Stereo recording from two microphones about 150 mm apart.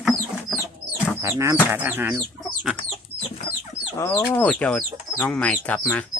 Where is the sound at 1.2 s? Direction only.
20° right (ahead or behind).